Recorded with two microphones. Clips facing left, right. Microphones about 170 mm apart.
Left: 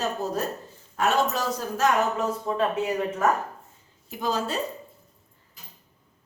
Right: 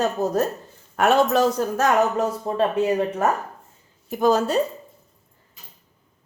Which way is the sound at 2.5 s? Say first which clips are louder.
Right 7 dB; 35° right (ahead or behind).